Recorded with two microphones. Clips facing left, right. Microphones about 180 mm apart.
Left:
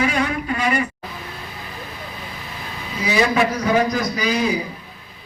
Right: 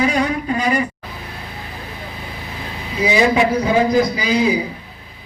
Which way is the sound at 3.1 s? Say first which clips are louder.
Right 3 dB; 20° right (ahead or behind).